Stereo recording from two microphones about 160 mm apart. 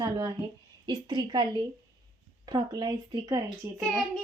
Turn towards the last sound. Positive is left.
turn(degrees=-25)  # may be behind; listen again after turning